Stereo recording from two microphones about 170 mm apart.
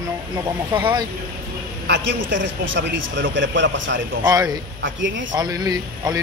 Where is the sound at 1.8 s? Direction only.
90° right.